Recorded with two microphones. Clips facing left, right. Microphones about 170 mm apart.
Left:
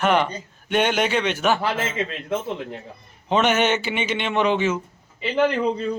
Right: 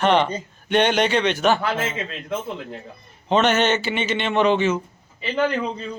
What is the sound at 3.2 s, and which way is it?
A man's voice, 10° left (ahead or behind).